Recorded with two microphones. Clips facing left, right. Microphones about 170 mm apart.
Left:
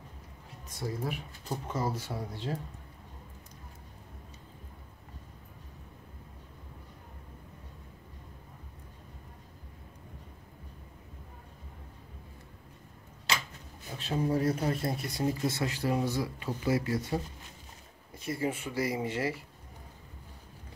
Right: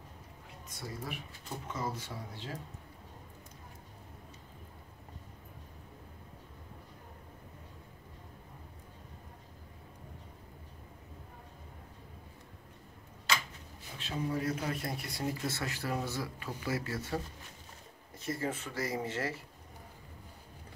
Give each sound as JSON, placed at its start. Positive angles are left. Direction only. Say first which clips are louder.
{"t": 1.0, "sound": "speech", "louder": "left 6 dB", "side_deg": 40}
{"t": 13.9, "sound": "speech", "louder": "left 6 dB", "side_deg": 35}